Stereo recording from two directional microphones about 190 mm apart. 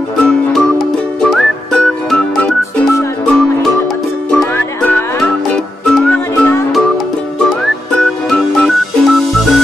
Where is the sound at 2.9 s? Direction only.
15° left (ahead or behind).